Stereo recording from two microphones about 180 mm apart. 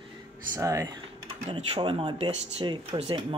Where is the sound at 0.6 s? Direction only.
15° right (ahead or behind).